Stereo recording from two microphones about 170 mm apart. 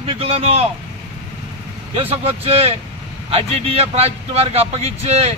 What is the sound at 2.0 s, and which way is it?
A man's voice, 35° right (ahead or behind).